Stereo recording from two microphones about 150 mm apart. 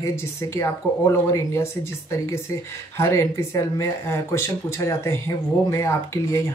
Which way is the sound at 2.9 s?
20° left (ahead or behind).